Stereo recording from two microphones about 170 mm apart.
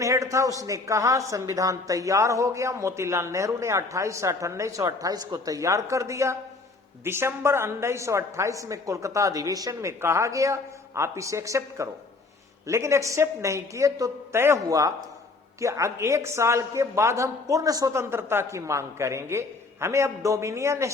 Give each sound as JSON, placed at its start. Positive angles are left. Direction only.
{"t": 0.0, "sound": "speech", "side_deg": -20}